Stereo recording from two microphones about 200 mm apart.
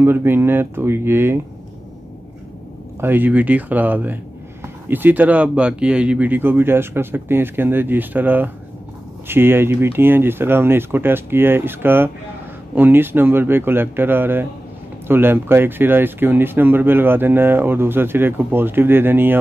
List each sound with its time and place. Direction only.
0.0 s speech: 10° right (ahead or behind)
3.0 s speech: 10° right (ahead or behind)